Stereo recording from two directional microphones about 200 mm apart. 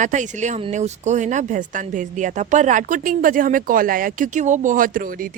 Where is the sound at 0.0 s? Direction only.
40° right (ahead or behind).